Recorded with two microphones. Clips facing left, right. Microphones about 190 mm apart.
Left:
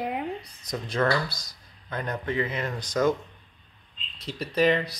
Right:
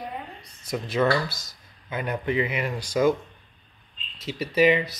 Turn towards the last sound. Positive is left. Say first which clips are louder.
# right 3 dB
turn(degrees=-5)  # may be behind; listen again after turning